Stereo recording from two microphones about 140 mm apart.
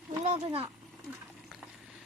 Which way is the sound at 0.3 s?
45° right (ahead or behind).